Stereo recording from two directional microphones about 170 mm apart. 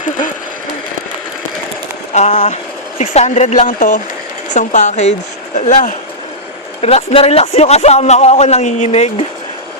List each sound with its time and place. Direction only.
2.1 s a man's voice: 45° left (ahead or behind)